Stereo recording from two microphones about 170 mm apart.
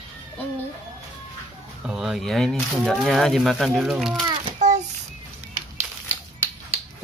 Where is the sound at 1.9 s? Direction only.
Centre (ahead or behind).